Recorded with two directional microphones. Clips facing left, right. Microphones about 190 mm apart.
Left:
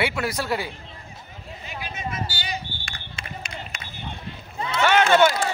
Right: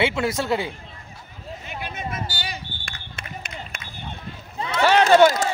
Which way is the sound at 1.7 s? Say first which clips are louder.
Right 1 dB; 55° right (ahead or behind).